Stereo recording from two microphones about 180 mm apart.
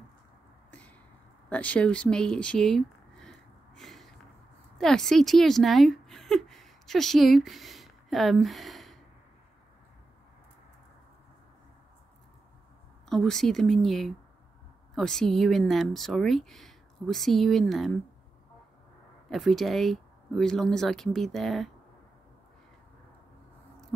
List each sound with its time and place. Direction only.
0.7 s a sound: 5° left (ahead or behind)
4.7 s a woman's voice: centre (ahead or behind)
13.1 s speech: centre (ahead or behind)
19.2 s speech: centre (ahead or behind)